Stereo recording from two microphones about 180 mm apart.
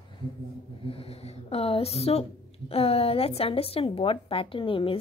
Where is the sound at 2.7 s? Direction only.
35° left (ahead or behind).